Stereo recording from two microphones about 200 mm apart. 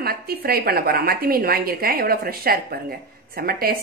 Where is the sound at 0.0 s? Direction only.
50° right (ahead or behind).